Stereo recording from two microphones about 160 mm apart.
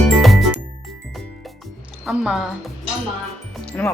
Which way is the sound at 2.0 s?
5° right (ahead or behind).